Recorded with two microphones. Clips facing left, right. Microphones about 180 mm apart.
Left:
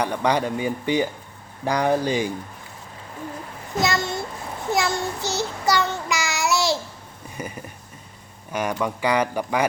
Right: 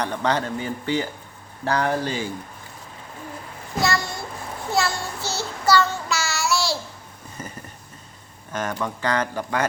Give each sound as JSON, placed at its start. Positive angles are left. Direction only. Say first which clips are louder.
{"t": 0.0, "sound": "speech", "louder": "left 2 dB", "side_deg": 10}
{"t": 3.8, "sound": "a child's voice", "louder": "left 1 dB", "side_deg": 20}
{"t": 4.7, "sound": "child singing", "louder": "left 1 dB", "side_deg": 15}
{"t": 7.3, "sound": "a sound", "louder": "left 4 dB", "side_deg": 10}
{"t": 8.5, "sound": "speech", "louder": "left 2 dB", "side_deg": 10}